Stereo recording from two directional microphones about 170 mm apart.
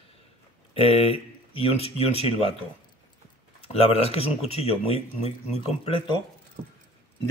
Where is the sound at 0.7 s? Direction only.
35° left (ahead or behind).